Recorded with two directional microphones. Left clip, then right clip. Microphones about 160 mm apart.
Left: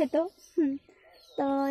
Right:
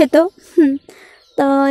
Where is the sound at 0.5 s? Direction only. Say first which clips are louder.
Right 15 dB; 30° right (ahead or behind).